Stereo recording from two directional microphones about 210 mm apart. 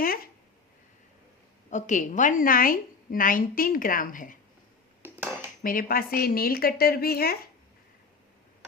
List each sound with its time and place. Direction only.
0.0 s a sound: 45° left (ahead or behind)
1.7 s a woman's voice: 35° left (ahead or behind)
5.0 s dishes: 10° right (ahead or behind)
5.6 s speech: 45° left (ahead or behind)